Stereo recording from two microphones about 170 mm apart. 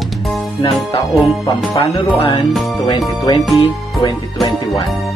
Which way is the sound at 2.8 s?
20° left (ahead or behind).